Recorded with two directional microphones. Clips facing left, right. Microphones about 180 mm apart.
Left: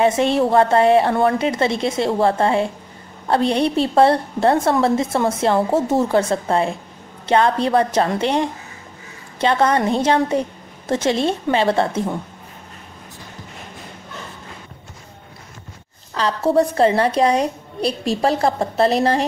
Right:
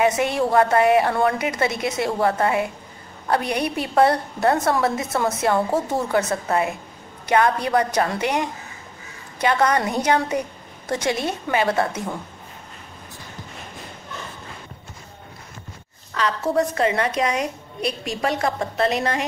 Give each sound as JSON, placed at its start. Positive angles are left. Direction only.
{"t": 0.0, "sound": "a woman's voice", "side_deg": 25}
{"t": 16.2, "sound": "a woman's voice", "side_deg": 30}